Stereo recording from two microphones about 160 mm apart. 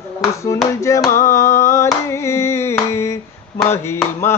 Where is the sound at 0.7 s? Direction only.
20° left (ahead or behind).